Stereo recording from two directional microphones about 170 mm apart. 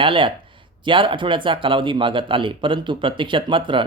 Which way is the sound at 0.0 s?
30° right (ahead or behind).